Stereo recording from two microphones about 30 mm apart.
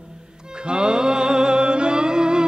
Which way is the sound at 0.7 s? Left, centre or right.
Right.